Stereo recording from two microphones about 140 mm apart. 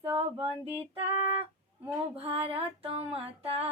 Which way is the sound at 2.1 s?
45° right (ahead or behind).